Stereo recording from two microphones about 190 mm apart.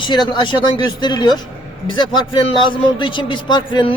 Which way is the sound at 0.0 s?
25° left (ahead or behind).